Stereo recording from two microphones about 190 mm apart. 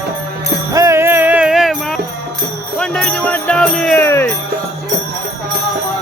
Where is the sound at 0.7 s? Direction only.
15° right (ahead or behind).